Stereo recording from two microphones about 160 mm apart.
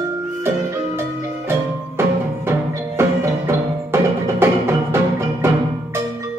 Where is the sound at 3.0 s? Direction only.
15° right (ahead or behind).